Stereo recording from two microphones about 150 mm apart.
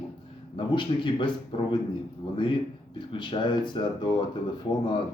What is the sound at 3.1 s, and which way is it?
A man's voice, 30° left (ahead or behind).